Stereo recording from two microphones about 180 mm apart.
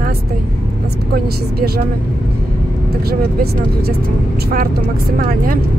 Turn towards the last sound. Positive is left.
turn(degrees=-50)  # may be behind; listen again after turning